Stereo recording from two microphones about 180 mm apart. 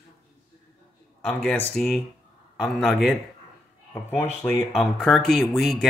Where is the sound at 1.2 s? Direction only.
10° left (ahead or behind).